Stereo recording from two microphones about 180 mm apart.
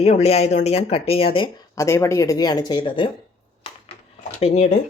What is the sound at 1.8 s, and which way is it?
Speech, 15° left (ahead or behind).